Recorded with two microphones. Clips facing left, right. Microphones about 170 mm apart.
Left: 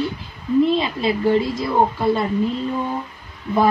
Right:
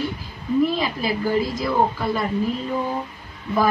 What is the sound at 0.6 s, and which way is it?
A woman's voice, 25° left (ahead or behind).